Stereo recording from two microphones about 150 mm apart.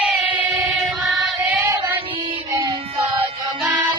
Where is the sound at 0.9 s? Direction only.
Centre (ahead or behind).